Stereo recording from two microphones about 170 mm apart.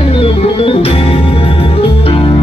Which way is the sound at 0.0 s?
35° left (ahead or behind).